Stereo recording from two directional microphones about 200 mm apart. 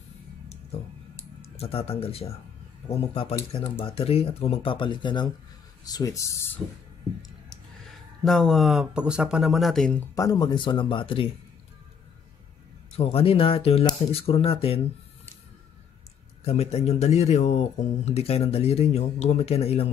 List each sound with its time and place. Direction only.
1.6 s speech: 30° left (ahead or behind); by 6.6 s 15° left (ahead or behind)
8.2 s speech: centre (ahead or behind)
10.1 s speech: 15° left (ahead or behind)
12.9 s speech: 30° left (ahead or behind)
16.4 s speech: 30° left (ahead or behind)